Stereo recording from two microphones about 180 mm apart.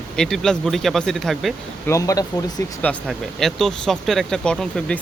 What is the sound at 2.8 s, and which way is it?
Speech, 5° left (ahead or behind).